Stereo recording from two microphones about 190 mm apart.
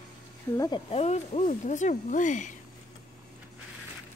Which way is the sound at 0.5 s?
20° left (ahead or behind).